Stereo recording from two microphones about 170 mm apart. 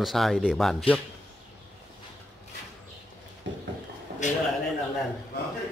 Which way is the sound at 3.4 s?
90° right.